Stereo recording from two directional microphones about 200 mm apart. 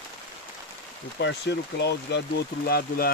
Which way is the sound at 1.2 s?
60° left (ahead or behind).